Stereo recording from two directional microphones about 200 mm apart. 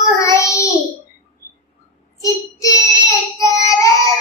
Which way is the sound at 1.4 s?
45° left (ahead or behind).